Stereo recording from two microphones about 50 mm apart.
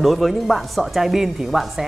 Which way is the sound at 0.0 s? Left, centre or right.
Centre.